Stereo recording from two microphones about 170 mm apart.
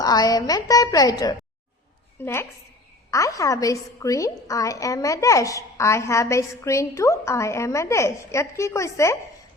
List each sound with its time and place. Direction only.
0.0 s a woman's voice: 20° left (ahead or behind)